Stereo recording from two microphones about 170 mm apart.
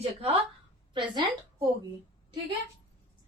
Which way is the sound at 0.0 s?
35° right (ahead or behind).